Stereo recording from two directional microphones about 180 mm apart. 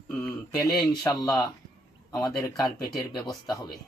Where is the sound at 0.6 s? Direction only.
20° left (ahead or behind).